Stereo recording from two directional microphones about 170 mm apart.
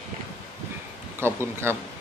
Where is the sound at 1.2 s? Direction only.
15° right (ahead or behind).